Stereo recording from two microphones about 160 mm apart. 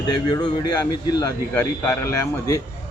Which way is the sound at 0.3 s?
25° left (ahead or behind).